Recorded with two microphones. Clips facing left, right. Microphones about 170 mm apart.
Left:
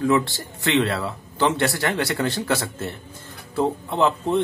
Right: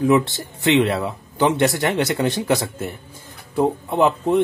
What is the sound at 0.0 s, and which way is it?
Speech, 20° right (ahead or behind).